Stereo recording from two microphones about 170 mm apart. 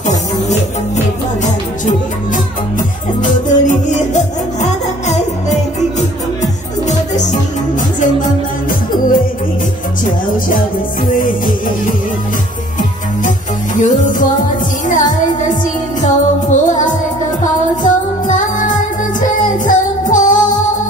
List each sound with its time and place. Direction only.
0.5 s music: 45° left (ahead or behind)
11.1 s music: 50° left (ahead or behind)
13.7 s music: 50° left (ahead or behind)